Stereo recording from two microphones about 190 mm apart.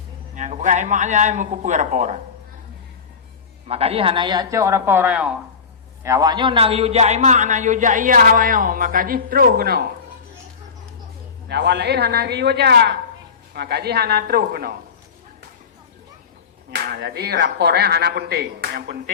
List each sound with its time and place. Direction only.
0.3 s a man's voice: 40° right (ahead or behind)
3.7 s a woman's voice: 30° right (ahead or behind); by 9.8 s 55° right (ahead or behind)
11.4 s speech: 60° right (ahead or behind)
16.7 s speech: 60° right (ahead or behind)